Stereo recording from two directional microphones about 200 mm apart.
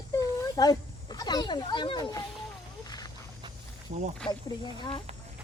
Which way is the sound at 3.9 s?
40° right (ahead or behind).